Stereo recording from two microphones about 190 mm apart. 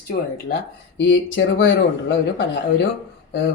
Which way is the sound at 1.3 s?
75° left (ahead or behind).